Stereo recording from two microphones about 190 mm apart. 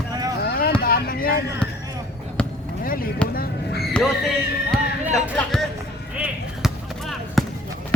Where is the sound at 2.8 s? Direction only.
50° left (ahead or behind).